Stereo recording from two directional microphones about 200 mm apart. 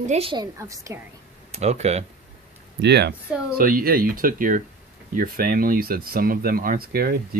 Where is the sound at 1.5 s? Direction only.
30° right (ahead or behind).